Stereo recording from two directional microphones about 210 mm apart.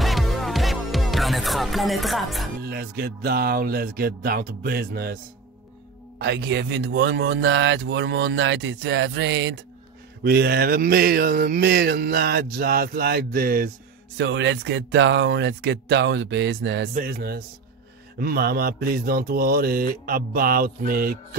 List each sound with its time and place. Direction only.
0.0 s music: centre (ahead or behind)
2.6 s mantra: 45° right (ahead or behind)
6.1 s speech: 55° right (ahead or behind)
10.2 s mantra: 45° right (ahead or behind)
14.1 s speech: 60° right (ahead or behind)
16.9 s mantra: 50° right (ahead or behind)